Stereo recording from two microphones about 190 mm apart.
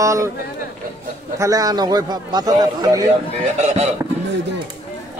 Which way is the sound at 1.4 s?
20° right (ahead or behind).